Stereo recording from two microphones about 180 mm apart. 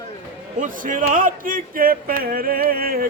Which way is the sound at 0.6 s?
45° right (ahead or behind).